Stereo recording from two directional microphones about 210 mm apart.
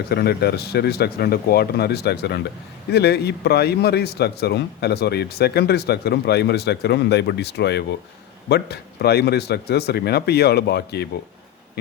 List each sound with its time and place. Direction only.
0.1 s a man's voice: 50° left (ahead or behind)